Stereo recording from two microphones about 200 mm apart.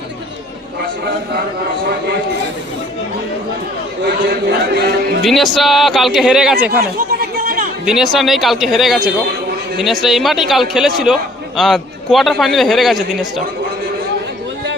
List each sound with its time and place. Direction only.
4.0 s a sound: 50° right (ahead or behind)
5.2 s a man's voice: centre (ahead or behind)
6.7 s chatter: 50° right (ahead or behind)
7.9 s a man's voice: centre (ahead or behind)